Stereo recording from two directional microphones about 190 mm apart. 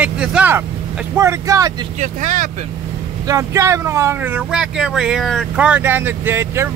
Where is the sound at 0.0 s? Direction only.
5° right (ahead or behind).